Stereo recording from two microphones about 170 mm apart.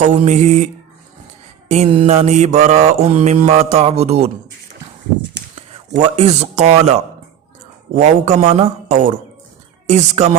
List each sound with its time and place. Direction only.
0.0 s speech: 45° right (ahead or behind)
1.6 s a sound: 40° right (ahead or behind)
1.9 s mantra: 35° right (ahead or behind)
5.4 s a sound: 90° right
6.0 s mantra: 40° right (ahead or behind)
7.9 s speech: 45° right (ahead or behind)
8.4 s mantra: 35° right (ahead or behind)
9.8 s speech: 40° right (ahead or behind)